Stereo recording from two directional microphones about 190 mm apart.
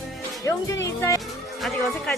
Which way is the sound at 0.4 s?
15° left (ahead or behind).